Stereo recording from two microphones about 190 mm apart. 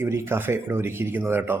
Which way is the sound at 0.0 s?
10° right (ahead or behind).